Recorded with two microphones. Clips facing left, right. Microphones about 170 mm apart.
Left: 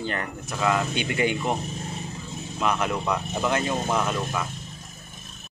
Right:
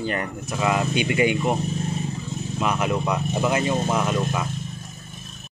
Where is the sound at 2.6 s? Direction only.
5° right (ahead or behind).